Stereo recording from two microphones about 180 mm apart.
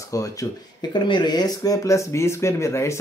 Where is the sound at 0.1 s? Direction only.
20° left (ahead or behind).